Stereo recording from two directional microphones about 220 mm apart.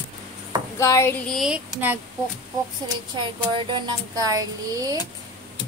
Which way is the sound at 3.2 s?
20° right (ahead or behind).